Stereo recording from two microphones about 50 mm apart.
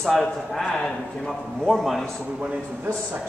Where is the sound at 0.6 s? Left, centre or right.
Centre.